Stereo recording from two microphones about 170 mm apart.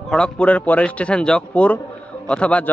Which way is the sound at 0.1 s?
5° left (ahead or behind).